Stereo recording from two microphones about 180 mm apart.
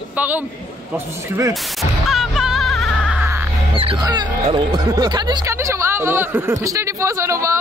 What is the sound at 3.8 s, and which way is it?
Speech, 25° right (ahead or behind).